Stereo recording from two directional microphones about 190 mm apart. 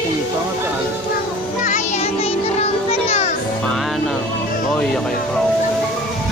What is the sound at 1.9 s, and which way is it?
Music, 35° left (ahead or behind).